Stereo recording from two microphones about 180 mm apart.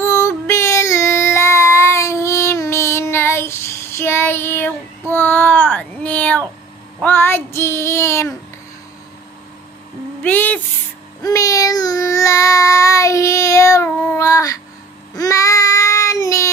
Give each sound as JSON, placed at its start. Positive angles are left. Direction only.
{"t": 0.0, "sound": "child singing", "side_deg": 15}
{"t": 10.2, "sound": "child singing", "side_deg": 10}